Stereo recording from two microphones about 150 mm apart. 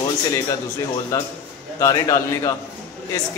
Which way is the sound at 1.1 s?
20° left (ahead or behind).